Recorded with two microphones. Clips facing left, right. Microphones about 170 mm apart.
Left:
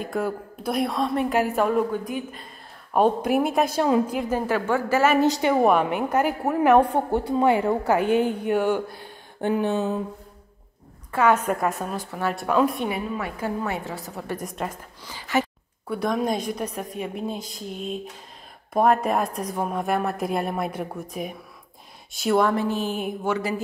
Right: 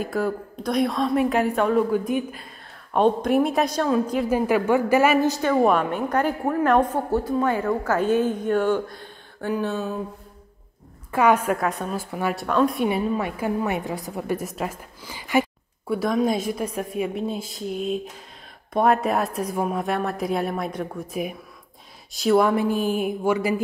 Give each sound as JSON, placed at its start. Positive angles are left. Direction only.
{"t": 0.0, "sound": "a woman's voice", "side_deg": 0}
{"t": 2.9, "sound": "a woman's voice", "side_deg": 5}
{"t": 4.3, "sound": "a woman's voice", "side_deg": -10}
{"t": 5.3, "sound": "a woman's voice", "side_deg": 15}
{"t": 9.4, "sound": "a sound", "side_deg": 20}
{"t": 11.1, "sound": "a woman's voice", "side_deg": -10}
{"t": 11.6, "sound": "a woman's voice", "side_deg": 0}
{"t": 12.1, "sound": "a woman's voice", "side_deg": -10}
{"t": 12.4, "sound": "a woman's voice", "side_deg": 5}
{"t": 13.4, "sound": "a woman's voice", "side_deg": -15}
{"t": 15.9, "sound": "a woman's voice", "side_deg": 0}
{"t": 22.1, "sound": "a woman's voice", "side_deg": 0}
{"t": 22.4, "sound": "a woman's voice", "side_deg": -10}